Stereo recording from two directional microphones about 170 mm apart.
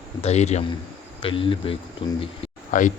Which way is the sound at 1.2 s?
30° left (ahead or behind).